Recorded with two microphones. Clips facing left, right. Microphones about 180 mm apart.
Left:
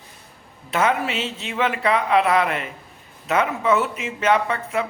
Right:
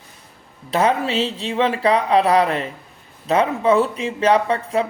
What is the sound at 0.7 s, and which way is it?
Speech, 35° right (ahead or behind).